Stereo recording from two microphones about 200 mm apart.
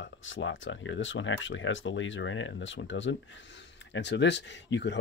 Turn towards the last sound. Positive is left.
turn(degrees=60)  # may be behind; listen again after turning